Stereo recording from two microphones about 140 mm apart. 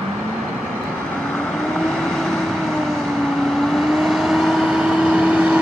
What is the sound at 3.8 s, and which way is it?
Vehicle, centre (ahead or behind).